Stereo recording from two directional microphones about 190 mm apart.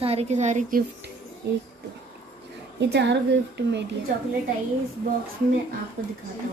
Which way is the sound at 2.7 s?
65° right (ahead or behind).